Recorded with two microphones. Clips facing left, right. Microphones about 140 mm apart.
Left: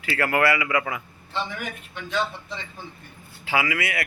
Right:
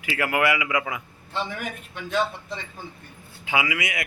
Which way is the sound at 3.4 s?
20° right (ahead or behind).